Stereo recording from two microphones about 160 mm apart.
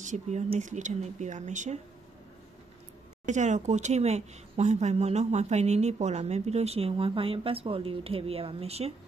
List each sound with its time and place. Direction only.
0.0 s speech: 45° right (ahead or behind)
3.3 s speech: 50° right (ahead or behind)